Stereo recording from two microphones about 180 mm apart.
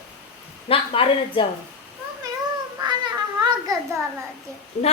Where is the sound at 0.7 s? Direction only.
30° left (ahead or behind).